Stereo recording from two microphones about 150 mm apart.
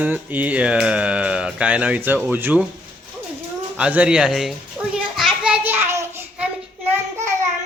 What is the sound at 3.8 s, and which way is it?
Speech, 10° right (ahead or behind).